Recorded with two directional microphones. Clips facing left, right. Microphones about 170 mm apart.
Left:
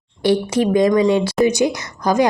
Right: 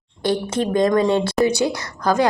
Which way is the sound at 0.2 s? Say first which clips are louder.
Left 4 dB; 50° right (ahead or behind).